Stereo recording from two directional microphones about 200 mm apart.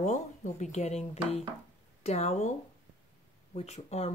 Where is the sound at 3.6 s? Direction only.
30° left (ahead or behind).